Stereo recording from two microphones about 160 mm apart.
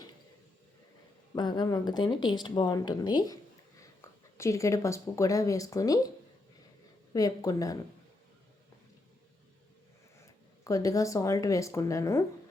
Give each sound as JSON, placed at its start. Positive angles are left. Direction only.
{"t": 1.4, "sound": "speech", "side_deg": 25}
{"t": 7.1, "sound": "speech", "side_deg": 25}
{"t": 10.6, "sound": "speech", "side_deg": 20}